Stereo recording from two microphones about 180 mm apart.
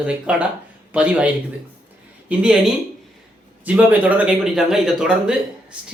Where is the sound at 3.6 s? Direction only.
10° right (ahead or behind).